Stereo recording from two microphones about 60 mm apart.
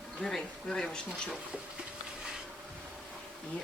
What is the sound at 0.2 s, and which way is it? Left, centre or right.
Speech, centre.